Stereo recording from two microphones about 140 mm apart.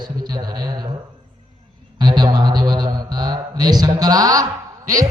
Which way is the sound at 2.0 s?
30° right (ahead or behind).